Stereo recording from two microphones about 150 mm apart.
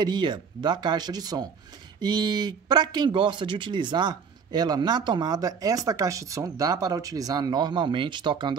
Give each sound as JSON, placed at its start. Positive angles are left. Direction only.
{"t": 0.0, "sound": "speech", "side_deg": -30}